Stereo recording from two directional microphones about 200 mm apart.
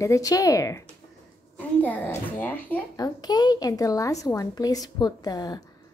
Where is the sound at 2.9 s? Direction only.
20° left (ahead or behind).